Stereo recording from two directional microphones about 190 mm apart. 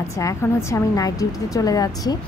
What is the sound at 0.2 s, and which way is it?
Speech, 15° left (ahead or behind).